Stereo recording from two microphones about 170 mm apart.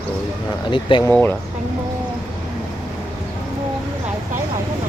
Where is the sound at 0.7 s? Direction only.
30° left (ahead or behind).